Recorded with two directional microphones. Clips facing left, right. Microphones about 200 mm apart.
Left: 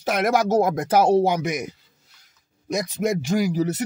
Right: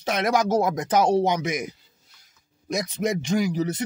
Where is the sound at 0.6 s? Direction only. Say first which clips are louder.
Left 3 dB; 55° left (ahead or behind).